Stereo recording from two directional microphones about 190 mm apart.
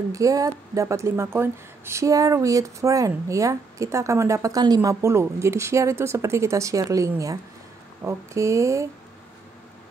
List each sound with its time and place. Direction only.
0.1 s a woman's voice: 15° right (ahead or behind)